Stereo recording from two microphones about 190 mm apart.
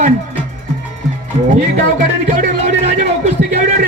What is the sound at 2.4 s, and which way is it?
Speech, 40° right (ahead or behind).